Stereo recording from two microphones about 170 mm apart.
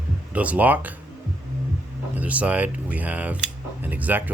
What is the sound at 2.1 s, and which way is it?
Speech, 10° right (ahead or behind).